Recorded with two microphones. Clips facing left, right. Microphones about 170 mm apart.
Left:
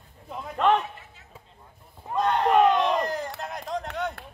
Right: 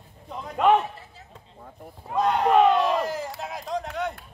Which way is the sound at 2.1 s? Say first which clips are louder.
Right 1 dB; 5° right (ahead or behind).